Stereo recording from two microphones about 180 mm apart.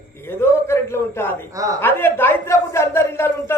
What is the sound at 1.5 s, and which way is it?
Speech, 20° right (ahead or behind).